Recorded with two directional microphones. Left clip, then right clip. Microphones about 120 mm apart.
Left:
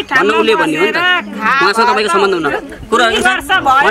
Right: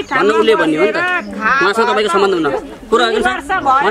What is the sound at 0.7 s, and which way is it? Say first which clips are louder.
Speech: left 2 dB; 20° left (ahead or behind).